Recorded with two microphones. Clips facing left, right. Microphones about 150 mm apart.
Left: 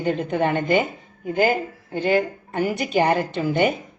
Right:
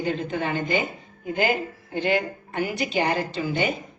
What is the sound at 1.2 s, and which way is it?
A woman's voice, 40° left (ahead or behind).